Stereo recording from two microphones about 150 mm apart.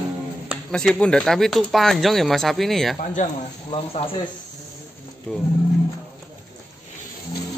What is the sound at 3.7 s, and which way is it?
Speech, 35° left (ahead or behind).